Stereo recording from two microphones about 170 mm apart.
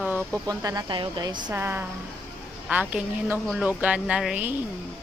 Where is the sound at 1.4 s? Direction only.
15° right (ahead or behind).